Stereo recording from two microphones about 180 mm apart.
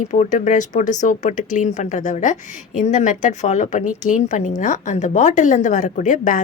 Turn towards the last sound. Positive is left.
turn(degrees=45)  # may be behind; listen again after turning